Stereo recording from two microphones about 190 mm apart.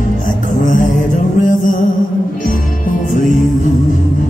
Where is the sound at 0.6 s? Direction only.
45° left (ahead or behind).